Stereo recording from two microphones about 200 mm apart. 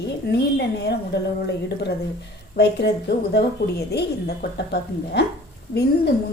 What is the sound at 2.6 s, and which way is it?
A woman's voice, 55° left (ahead or behind).